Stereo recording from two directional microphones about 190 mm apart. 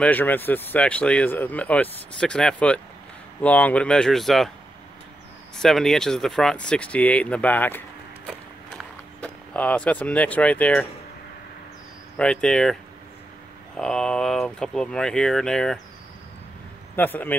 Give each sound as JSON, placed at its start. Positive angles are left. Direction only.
{"t": 0.0, "sound": "speech", "side_deg": 10}
{"t": 5.6, "sound": "speech", "side_deg": 0}
{"t": 9.2, "sound": "speech", "side_deg": 5}
{"t": 12.2, "sound": "speech", "side_deg": 5}
{"t": 13.7, "sound": "speech", "side_deg": 5}
{"t": 16.9, "sound": "speech", "side_deg": 10}